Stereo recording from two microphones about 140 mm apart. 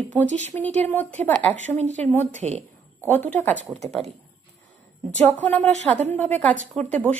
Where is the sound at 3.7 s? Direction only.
50° right (ahead or behind).